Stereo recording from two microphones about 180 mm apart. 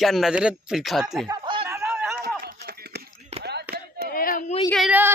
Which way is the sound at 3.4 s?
70° right (ahead or behind).